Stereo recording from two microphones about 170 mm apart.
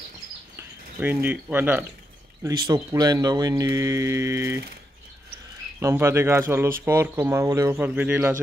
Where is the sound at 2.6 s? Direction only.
25° right (ahead or behind).